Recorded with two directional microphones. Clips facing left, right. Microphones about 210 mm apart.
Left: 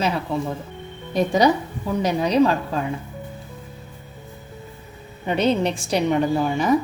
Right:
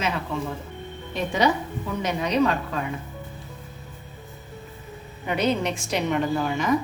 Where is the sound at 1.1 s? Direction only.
40° left (ahead or behind).